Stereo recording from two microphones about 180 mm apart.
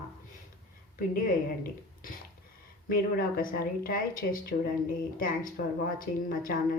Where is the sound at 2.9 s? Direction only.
55° left (ahead or behind).